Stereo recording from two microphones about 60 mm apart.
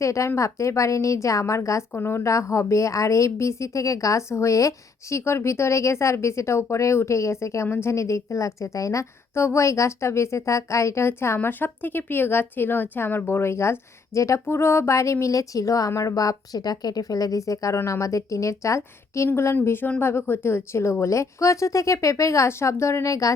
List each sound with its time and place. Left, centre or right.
0.0 s a woman's voice: left
1.9 s a woman's voice: left
2.2 s a woman's voice: left
5.1 s a woman's voice: left
11.3 s a woman's voice: left
14.4 s a woman's voice: left
19.6 s a woman's voice: left
23.0 s speech: left